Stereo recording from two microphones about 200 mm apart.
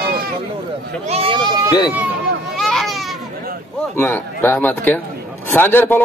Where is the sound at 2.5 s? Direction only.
Centre (ahead or behind).